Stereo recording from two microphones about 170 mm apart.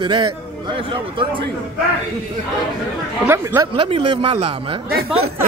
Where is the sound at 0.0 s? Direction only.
30° right (ahead or behind).